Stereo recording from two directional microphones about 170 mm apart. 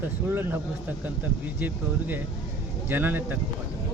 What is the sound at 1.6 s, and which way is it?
Speech, 10° right (ahead or behind).